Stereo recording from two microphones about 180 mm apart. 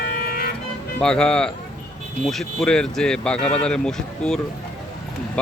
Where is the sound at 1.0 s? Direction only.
5° left (ahead or behind).